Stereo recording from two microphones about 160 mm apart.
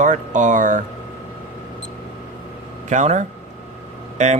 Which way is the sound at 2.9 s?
45° right (ahead or behind).